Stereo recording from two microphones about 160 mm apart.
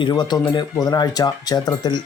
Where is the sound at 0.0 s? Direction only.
25° left (ahead or behind).